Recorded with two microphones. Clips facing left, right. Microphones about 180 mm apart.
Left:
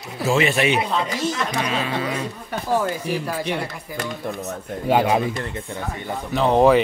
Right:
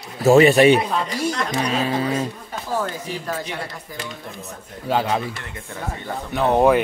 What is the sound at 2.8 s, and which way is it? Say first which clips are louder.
Speech: left 3 dB; 10° left (ahead or behind).